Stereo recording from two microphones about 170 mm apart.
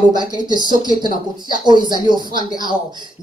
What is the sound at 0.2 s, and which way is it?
Speech, 25° right (ahead or behind).